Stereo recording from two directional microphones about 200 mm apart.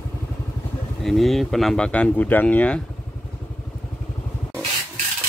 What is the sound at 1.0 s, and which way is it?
Speech, centre (ahead or behind).